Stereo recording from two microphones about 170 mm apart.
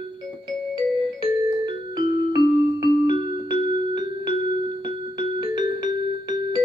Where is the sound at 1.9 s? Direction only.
25° right (ahead or behind).